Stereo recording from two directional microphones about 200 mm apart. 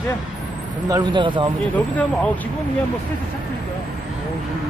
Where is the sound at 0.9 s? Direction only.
20° right (ahead or behind).